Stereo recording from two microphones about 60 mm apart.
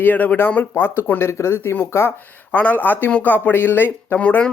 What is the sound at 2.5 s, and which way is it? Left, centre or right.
Speech, left.